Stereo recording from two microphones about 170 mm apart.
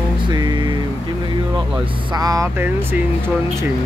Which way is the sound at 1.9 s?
30° right (ahead or behind).